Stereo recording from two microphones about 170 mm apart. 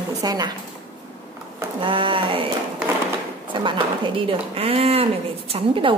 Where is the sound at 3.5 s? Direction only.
30° right (ahead or behind).